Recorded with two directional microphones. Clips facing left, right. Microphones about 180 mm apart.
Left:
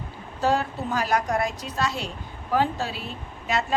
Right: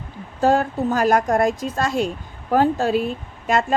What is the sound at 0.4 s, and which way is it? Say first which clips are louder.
Speech: right 6 dB; 50° right (ahead or behind).